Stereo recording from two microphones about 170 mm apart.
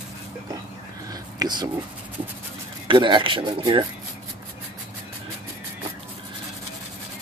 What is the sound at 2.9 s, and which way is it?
Speech, 25° right (ahead or behind).